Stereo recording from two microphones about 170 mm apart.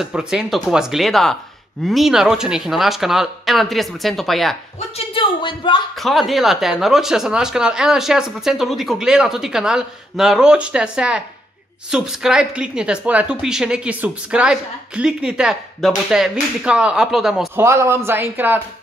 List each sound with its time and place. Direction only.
0.0 s a woman's voice: 5° right (ahead or behind)
4.7 s speech: 35° left (ahead or behind)
5.9 s a woman's voice: centre (ahead or behind)
17.6 s speech: 15° right (ahead or behind)